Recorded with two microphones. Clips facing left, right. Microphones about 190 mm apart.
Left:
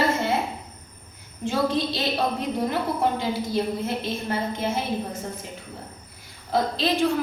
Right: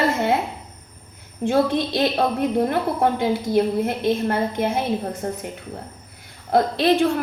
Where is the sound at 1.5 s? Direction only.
55° right (ahead or behind).